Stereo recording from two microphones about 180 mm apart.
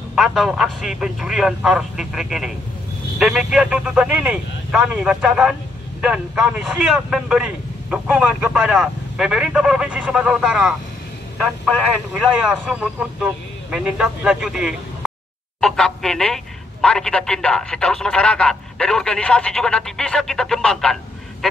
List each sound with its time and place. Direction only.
0.1 s speech: centre (ahead or behind)